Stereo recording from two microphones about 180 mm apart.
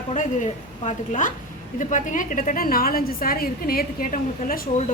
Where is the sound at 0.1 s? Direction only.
40° left (ahead or behind).